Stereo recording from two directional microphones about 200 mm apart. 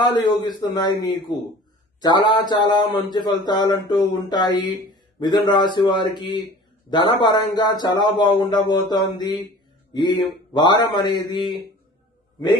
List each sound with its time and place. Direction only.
0.0 s a man's voice: 20° left (ahead or behind)